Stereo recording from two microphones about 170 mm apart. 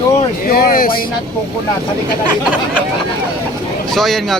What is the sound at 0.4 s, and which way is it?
Speech, 60° left (ahead or behind).